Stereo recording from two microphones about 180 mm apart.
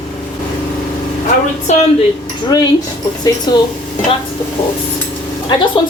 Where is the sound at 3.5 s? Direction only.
25° left (ahead or behind).